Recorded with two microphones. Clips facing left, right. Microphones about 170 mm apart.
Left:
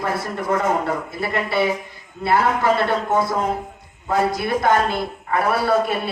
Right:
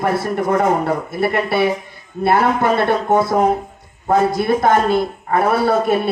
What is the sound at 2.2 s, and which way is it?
A man's voice, 55° right (ahead or behind).